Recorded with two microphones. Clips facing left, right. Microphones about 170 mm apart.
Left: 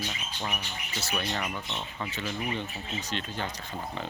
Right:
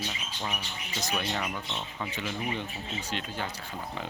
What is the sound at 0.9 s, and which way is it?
Speech, 10° right (ahead or behind).